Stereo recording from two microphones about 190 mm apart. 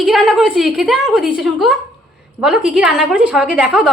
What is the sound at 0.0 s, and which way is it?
A woman's voice, centre (ahead or behind).